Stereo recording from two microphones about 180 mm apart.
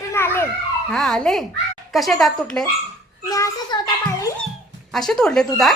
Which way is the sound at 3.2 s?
15° left (ahead or behind).